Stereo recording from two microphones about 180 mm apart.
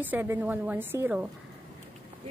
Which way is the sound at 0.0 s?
10° right (ahead or behind).